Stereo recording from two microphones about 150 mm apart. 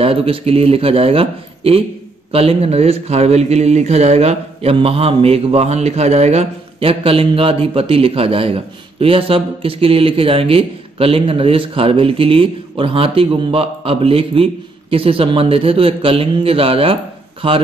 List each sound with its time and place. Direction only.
0.0 s a man's voice: 40° right (ahead or behind)